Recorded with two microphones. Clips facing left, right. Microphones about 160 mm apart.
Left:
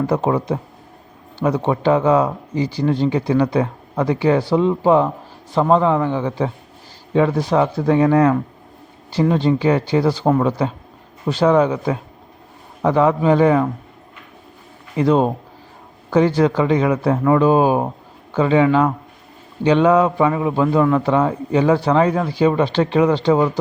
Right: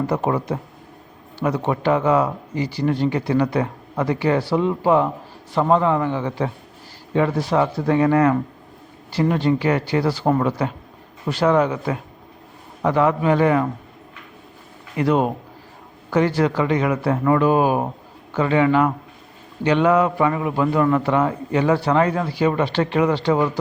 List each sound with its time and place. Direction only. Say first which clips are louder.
0.1 s speech: left 3 dB; 15° left (ahead or behind)
9.3 s speech: left 3 dB; 25° left (ahead or behind)
11.3 s speech: left 3 dB; 20° left (ahead or behind)
14.9 s speech: left 3 dB; 25° left (ahead or behind)